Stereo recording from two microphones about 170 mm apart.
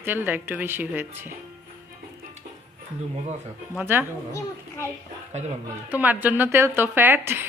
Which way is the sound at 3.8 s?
10° right (ahead or behind).